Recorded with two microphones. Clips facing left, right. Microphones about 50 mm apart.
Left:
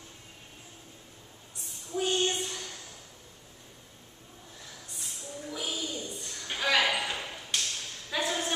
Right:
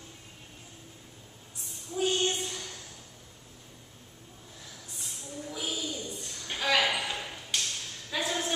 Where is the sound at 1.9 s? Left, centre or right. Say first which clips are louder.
Right 1 dB; centre.